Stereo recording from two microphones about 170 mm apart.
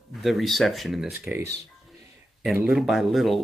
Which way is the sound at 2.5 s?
5° right (ahead or behind).